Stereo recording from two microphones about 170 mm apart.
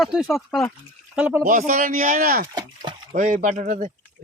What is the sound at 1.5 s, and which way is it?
Speech, 50° right (ahead or behind).